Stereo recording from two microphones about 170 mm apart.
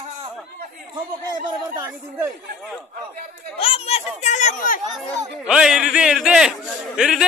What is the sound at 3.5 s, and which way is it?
A child's voice, 35° left (ahead or behind).